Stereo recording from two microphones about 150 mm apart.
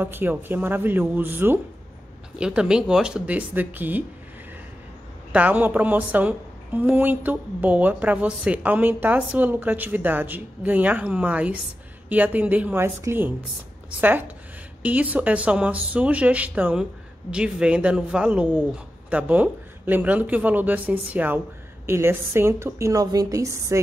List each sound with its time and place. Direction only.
0.0 s a woman's voice: 15° right (ahead or behind)
5.3 s a woman's voice: 10° right (ahead or behind)